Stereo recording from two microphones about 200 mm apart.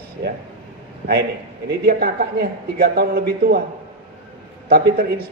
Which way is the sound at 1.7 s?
50° right (ahead or behind).